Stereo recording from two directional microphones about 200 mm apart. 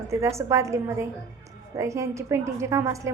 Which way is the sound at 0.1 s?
15° right (ahead or behind).